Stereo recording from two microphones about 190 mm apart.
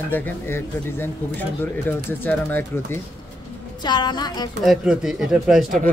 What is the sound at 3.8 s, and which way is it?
Speech, 25° left (ahead or behind).